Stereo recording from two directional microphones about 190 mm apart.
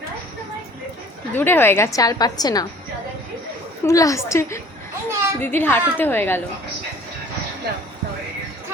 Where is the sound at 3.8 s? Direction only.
15° left (ahead or behind).